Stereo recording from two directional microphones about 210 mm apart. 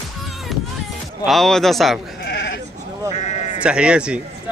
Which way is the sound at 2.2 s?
55° left (ahead or behind).